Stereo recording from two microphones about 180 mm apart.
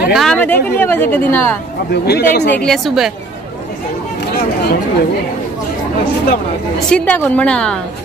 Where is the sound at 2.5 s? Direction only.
5° left (ahead or behind).